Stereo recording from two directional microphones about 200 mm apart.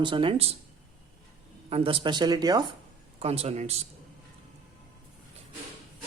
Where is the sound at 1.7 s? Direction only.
25° right (ahead or behind).